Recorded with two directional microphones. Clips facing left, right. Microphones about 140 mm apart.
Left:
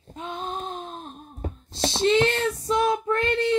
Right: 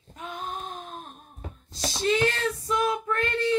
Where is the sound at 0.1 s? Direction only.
25° left (ahead or behind).